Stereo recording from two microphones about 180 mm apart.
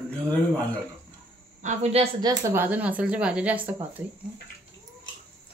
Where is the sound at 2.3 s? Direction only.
15° right (ahead or behind).